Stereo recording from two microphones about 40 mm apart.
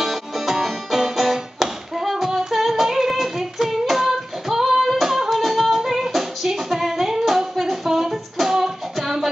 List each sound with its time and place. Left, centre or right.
0.0 s music: centre